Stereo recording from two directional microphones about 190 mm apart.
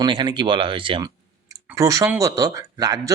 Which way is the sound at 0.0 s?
25° right (ahead or behind).